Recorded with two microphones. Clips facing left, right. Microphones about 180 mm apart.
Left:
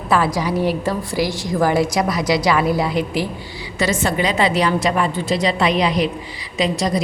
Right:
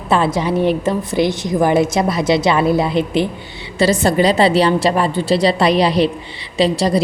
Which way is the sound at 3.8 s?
35° right (ahead or behind).